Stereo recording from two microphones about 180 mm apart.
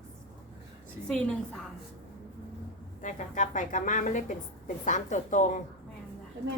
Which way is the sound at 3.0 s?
45° left (ahead or behind).